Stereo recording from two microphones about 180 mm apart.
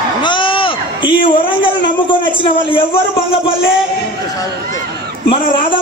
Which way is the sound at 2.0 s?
25° left (ahead or behind).